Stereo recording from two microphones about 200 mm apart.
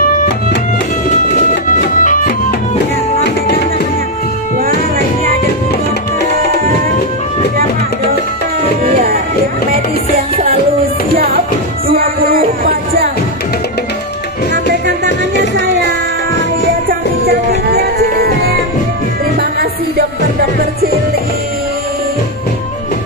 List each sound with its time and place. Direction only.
1.8 s music: 40° left (ahead or behind)
8.9 s music: 45° right (ahead or behind)
11.1 s music: 50° right (ahead or behind)
15.0 s music: 65° left (ahead or behind)
17.6 s music: 50° right (ahead or behind)